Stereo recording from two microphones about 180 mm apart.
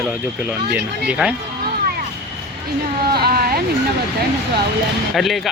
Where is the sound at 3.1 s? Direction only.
60° right (ahead or behind).